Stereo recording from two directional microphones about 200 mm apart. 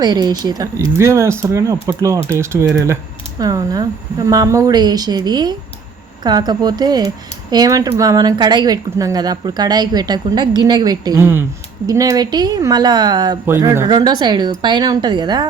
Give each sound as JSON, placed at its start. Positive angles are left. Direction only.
{"t": 0.0, "sound": "speech", "side_deg": -20}